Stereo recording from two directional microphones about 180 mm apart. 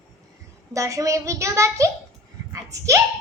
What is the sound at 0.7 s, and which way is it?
A child's voice, 20° right (ahead or behind).